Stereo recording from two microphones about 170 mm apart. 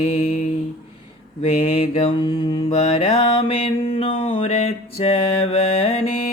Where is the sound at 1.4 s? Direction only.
35° left (ahead or behind).